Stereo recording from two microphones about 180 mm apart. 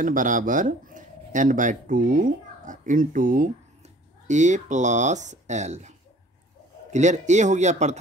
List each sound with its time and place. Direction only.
0.0 s a man's voice: 45° right (ahead or behind)